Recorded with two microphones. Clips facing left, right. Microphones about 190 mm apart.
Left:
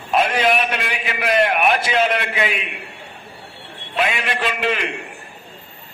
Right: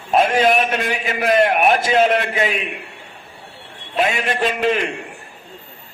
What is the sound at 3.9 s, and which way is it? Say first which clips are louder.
A man's voice: right 2 dB; 40° right (ahead or behind).